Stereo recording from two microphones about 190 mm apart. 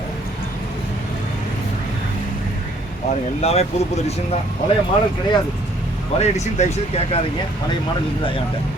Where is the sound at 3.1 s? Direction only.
35° left (ahead or behind).